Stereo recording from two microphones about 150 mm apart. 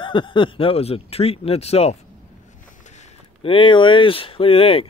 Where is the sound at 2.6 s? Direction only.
55° left (ahead or behind).